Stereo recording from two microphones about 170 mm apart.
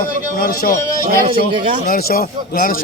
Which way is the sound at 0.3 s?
60° left (ahead or behind).